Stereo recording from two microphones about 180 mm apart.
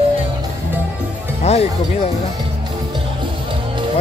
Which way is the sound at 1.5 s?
35° left (ahead or behind).